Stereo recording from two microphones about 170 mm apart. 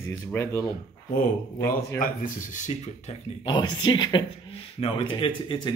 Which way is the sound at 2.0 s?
50° left (ahead or behind).